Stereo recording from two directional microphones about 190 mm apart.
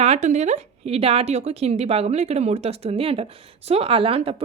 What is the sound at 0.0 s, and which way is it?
Speech, 35° right (ahead or behind).